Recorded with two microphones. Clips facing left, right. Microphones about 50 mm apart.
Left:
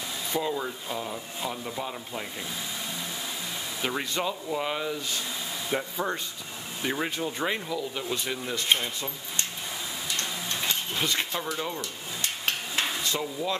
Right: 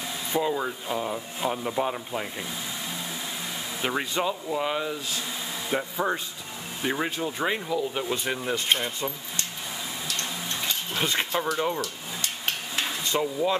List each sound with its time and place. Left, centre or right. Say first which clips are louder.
0.4 s speech: right 4 dB; centre
3.8 s speech: right 3 dB; centre
7.9 s speech: right 3 dB; right
11.0 s speech: right 5 dB; right
13.2 s speech: right 5 dB; centre